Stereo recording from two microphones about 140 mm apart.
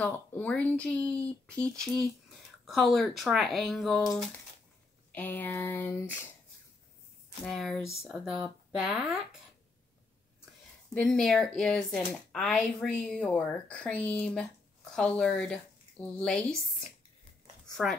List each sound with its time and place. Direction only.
0.0 s speech: 10° left (ahead or behind)
5.1 s speech: 15° left (ahead or behind)
7.4 s speech: 5° left (ahead or behind)
11.0 s speech: 5° left (ahead or behind)
17.8 s speech: centre (ahead or behind)